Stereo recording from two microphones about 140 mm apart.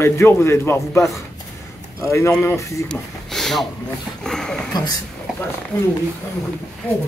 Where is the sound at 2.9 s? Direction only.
5° left (ahead or behind).